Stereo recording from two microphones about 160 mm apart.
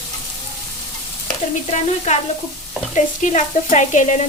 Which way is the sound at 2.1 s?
45° left (ahead or behind).